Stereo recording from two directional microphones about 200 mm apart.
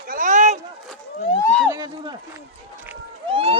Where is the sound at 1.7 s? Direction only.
20° right (ahead or behind).